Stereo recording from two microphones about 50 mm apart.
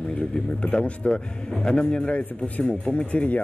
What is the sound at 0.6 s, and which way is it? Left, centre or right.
A man's voice, left.